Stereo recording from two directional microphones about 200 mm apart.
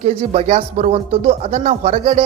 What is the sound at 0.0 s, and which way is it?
Speech, 30° right (ahead or behind).